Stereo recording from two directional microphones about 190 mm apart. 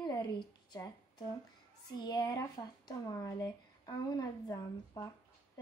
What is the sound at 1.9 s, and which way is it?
Speech, 20° left (ahead or behind).